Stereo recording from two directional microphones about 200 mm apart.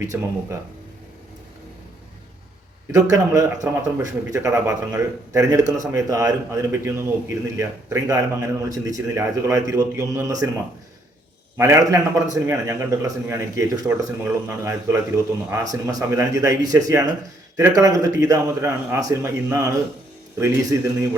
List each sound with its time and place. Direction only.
0.0 s a man's voice: 15° right (ahead or behind)
2.9 s a man's voice: 15° right (ahead or behind)
11.5 s a man's voice: 15° right (ahead or behind)